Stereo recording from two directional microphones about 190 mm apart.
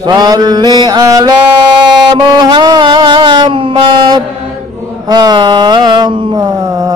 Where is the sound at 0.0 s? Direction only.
20° right (ahead or behind).